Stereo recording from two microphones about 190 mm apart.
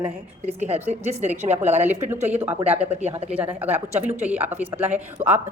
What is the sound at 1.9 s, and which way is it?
Speech, 10° right (ahead or behind).